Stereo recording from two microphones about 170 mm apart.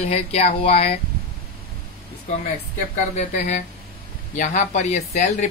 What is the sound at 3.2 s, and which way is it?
Speech, 45° left (ahead or behind).